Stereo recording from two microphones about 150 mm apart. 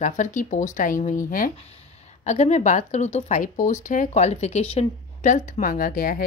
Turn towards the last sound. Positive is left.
turn(degrees=75)  # may be behind; listen again after turning